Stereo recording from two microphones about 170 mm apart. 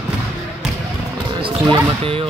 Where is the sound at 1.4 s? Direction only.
30° right (ahead or behind).